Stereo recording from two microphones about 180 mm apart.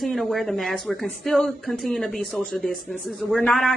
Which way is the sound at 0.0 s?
Centre (ahead or behind).